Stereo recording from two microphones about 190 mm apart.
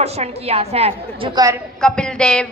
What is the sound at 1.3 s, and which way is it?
Speech, 20° right (ahead or behind).